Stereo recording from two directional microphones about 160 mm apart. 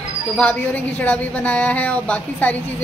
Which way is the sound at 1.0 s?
10° left (ahead or behind).